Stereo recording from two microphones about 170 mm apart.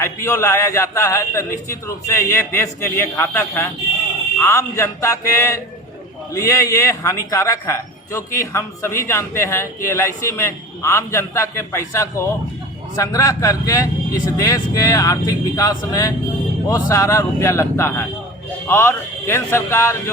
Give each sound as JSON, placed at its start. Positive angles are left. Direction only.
{"t": 0.0, "sound": "a man's voice", "side_deg": 15}